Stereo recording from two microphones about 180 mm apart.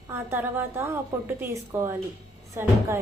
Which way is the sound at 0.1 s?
10° right (ahead or behind).